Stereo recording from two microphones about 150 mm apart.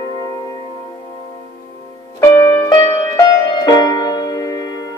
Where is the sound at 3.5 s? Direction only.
30° left (ahead or behind).